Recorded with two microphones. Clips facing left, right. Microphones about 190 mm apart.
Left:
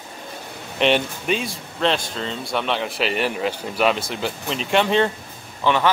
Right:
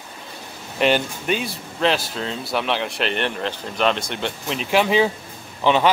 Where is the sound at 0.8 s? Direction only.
Centre (ahead or behind).